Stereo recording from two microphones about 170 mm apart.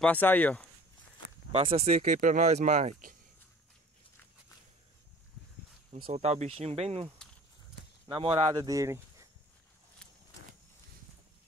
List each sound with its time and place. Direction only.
0.0 s speech: 10° left (ahead or behind)
1.5 s speech: 35° right (ahead or behind)
6.0 s speech: 40° right (ahead or behind)
8.1 s speech: 30° right (ahead or behind)